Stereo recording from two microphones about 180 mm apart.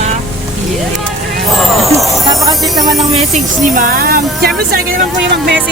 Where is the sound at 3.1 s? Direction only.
40° right (ahead or behind); by 5.0 s 55° right (ahead or behind).